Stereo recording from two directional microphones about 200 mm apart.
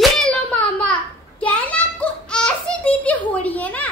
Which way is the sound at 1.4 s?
5° left (ahead or behind).